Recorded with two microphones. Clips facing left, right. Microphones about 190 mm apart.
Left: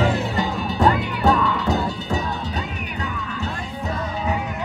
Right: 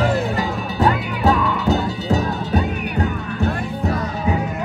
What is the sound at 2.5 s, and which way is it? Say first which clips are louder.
Music: right 8 dB; 55° right (ahead or behind).